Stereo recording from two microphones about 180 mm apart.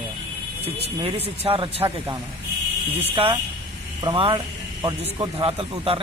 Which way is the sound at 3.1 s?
25° right (ahead or behind).